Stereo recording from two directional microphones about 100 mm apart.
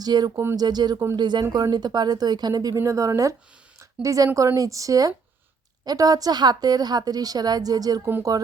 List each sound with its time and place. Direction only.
0.0 s speech: 45° right (ahead or behind)
3.8 s a sound: 35° right (ahead or behind)
4.4 s speech: 35° right (ahead or behind)